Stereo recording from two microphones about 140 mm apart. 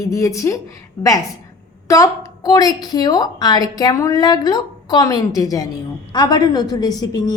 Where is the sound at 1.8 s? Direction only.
25° left (ahead or behind).